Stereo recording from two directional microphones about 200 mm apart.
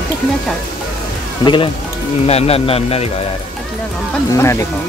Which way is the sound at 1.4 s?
25° left (ahead or behind).